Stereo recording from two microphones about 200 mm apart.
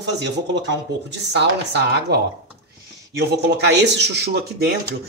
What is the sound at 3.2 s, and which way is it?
Speech, 55° right (ahead or behind).